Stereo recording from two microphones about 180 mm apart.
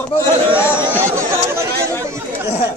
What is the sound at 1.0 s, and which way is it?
Speech, 15° right (ahead or behind).